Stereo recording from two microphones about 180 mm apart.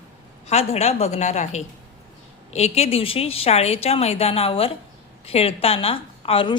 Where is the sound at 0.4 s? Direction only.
35° left (ahead or behind).